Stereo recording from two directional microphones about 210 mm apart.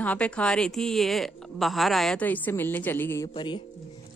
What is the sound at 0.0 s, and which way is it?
Speech, 5° left (ahead or behind).